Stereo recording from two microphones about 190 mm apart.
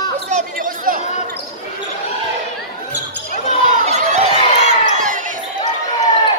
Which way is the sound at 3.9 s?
35° right (ahead or behind).